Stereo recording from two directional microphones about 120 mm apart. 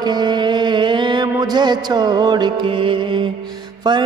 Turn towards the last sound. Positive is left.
turn(degrees=-35)  # may be behind; listen again after turning